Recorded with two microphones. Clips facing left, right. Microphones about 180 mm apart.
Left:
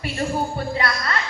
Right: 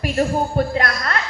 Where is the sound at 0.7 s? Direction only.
50° right (ahead or behind).